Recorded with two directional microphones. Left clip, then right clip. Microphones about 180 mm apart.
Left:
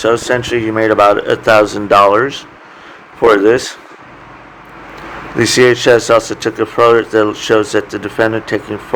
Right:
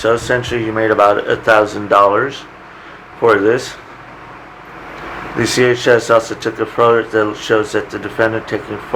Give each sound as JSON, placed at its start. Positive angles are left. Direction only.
{"t": 0.0, "sound": "speech", "side_deg": 45}
{"t": 5.4, "sound": "speech", "side_deg": 50}